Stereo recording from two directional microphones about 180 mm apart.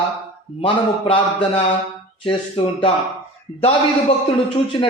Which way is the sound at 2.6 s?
30° left (ahead or behind).